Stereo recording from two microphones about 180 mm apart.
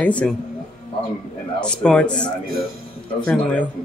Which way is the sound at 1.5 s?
5° left (ahead or behind).